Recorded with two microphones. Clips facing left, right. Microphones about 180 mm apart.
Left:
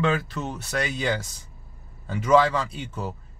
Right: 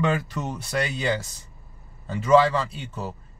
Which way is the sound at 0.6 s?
10° right (ahead or behind).